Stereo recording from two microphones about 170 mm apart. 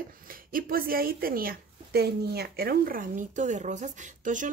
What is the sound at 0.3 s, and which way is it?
A woman's voice, 55° right (ahead or behind).